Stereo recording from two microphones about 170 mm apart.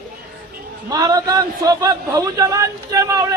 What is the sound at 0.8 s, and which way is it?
Speech, 25° right (ahead or behind).